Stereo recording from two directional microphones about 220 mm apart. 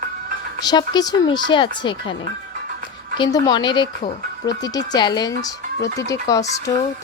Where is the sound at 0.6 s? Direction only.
20° left (ahead or behind).